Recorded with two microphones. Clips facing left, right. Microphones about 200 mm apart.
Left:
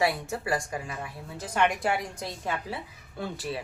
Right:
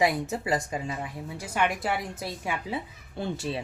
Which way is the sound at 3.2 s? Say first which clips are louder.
Right 2 dB; 25° right (ahead or behind).